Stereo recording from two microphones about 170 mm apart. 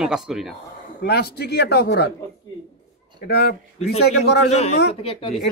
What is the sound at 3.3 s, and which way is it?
Speech, 70° left (ahead or behind).